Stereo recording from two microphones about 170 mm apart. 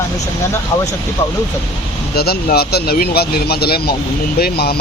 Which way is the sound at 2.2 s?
65° left (ahead or behind).